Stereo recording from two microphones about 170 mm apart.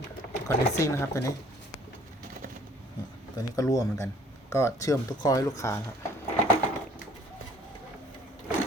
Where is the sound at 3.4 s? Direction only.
20° left (ahead or behind).